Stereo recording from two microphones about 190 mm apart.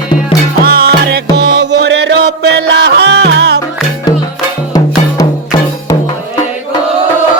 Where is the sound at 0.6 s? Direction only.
55° right (ahead or behind).